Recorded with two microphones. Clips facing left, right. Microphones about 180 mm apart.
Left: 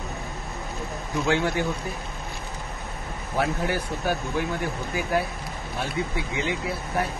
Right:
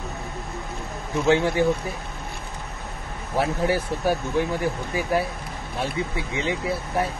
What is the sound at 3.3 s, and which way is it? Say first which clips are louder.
Speech: right 3 dB; 30° right (ahead or behind).